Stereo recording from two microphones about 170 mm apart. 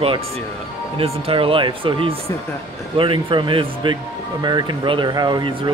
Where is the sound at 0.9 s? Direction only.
35° right (ahead or behind).